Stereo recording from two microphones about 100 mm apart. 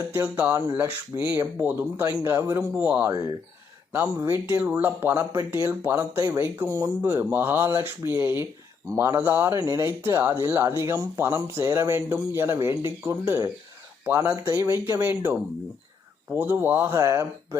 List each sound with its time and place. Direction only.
0.1 s speech: 20° right (ahead or behind)
1.4 s speech: 30° right (ahead or behind)
2.8 s speech: 15° right (ahead or behind)
4.2 s speech: 25° right (ahead or behind)